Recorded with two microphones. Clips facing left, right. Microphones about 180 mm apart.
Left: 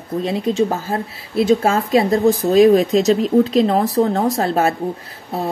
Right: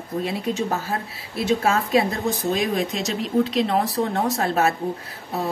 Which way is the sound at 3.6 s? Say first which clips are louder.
Left 6 dB; 40° left (ahead or behind).